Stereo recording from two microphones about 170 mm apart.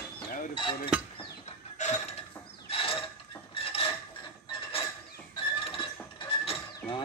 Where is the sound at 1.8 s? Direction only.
45° left (ahead or behind).